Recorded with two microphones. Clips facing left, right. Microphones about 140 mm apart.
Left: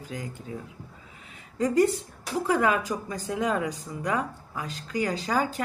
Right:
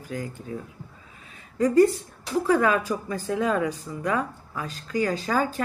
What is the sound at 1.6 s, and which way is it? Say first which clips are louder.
Speech: right 4 dB; 20° left (ahead or behind).